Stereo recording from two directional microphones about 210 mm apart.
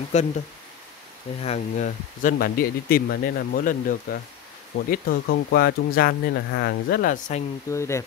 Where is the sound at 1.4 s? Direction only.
35° left (ahead or behind).